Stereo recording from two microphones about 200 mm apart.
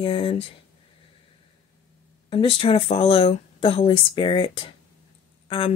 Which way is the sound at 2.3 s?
25° left (ahead or behind).